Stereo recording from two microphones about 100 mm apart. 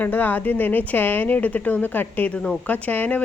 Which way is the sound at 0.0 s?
20° left (ahead or behind).